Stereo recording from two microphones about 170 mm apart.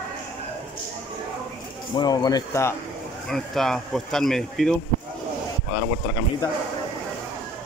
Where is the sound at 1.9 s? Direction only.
25° left (ahead or behind).